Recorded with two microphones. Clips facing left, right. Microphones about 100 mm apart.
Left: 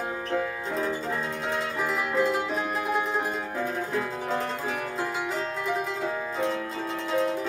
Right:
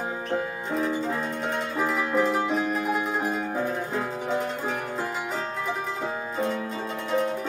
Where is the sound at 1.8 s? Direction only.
25° right (ahead or behind).